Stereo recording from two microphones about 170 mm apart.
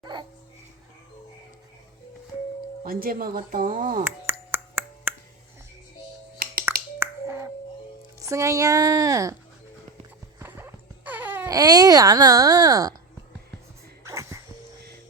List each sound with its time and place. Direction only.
0.0 s music: 25° right (ahead or behind)
2.8 s speech: 55° right (ahead or behind)
4.0 s ping: 10° right (ahead or behind)
6.4 s finger snapping: 60° right (ahead or behind)
7.0 s finger snapping: 15° right (ahead or behind)
8.2 s speech: 20° right (ahead or behind)
10.4 s a sound: 10° right (ahead or behind)
14.0 s music: 15° right (ahead or behind)